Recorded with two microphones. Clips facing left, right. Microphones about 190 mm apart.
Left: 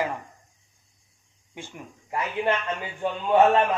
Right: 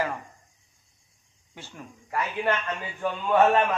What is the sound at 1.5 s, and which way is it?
A man's voice, 15° left (ahead or behind).